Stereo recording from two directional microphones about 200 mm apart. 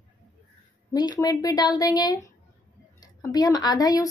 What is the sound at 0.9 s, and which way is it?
A woman's voice, 20° left (ahead or behind).